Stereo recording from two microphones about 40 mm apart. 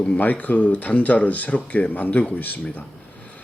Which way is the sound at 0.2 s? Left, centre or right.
Left.